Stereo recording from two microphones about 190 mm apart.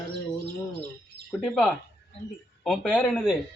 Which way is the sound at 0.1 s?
60° right (ahead or behind).